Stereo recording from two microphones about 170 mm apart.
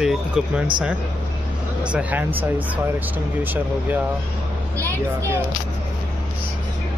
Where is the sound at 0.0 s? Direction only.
5° right (ahead or behind).